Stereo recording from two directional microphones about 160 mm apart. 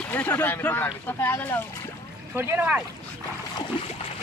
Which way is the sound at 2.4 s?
10° right (ahead or behind).